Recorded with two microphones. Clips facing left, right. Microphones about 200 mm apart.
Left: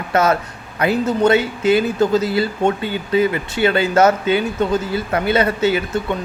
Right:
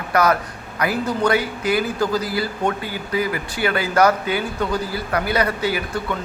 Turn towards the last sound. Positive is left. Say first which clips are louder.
# left 4 dB
turn(degrees=25)  # may be behind; listen again after turning